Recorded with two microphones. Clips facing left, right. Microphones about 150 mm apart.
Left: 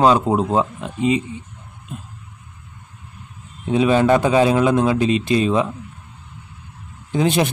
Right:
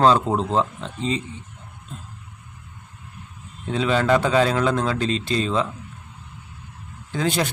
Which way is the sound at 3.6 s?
15° left (ahead or behind).